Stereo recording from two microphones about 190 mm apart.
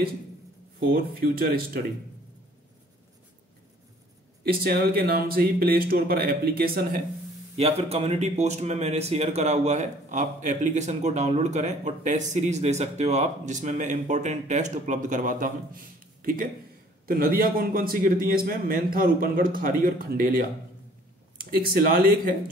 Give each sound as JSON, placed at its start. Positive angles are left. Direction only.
{"t": 0.7, "sound": "a man's voice", "side_deg": -50}
{"t": 4.5, "sound": "a man's voice", "side_deg": -55}
{"t": 7.5, "sound": "a man's voice", "side_deg": -35}